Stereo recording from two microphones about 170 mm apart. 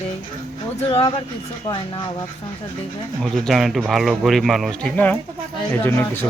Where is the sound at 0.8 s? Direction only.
30° left (ahead or behind).